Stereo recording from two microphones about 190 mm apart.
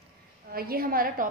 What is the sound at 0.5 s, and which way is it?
Speech, 50° right (ahead or behind).